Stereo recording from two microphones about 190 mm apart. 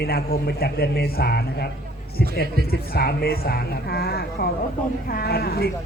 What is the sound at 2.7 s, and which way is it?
Speech, 55° left (ahead or behind).